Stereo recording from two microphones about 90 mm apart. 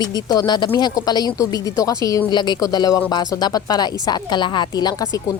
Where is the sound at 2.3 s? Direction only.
55° left (ahead or behind).